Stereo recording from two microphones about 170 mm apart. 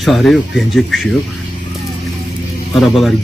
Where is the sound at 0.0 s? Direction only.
Centre (ahead or behind).